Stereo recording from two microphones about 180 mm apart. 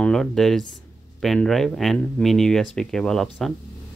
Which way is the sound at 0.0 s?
5° left (ahead or behind).